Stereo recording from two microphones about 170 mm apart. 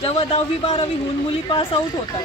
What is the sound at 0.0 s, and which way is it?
Speech, 35° left (ahead or behind).